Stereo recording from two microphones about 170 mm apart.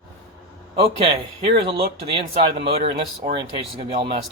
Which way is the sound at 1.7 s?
30° right (ahead or behind).